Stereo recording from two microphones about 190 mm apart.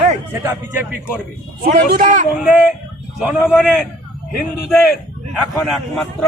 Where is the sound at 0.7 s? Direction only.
10° right (ahead or behind).